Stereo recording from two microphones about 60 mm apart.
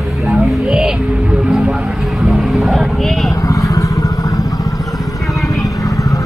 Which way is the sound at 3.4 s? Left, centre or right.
Left.